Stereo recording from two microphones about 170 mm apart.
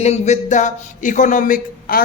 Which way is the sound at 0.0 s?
40° left (ahead or behind).